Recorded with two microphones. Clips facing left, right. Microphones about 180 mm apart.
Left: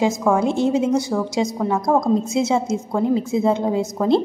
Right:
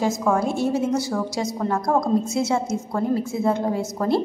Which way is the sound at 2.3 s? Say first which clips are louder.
Left 3 dB; 20° left (ahead or behind).